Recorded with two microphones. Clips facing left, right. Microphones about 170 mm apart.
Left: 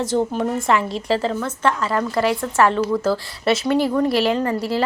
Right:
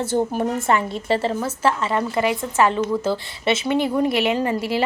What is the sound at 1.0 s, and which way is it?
A woman's voice, 5° right (ahead or behind).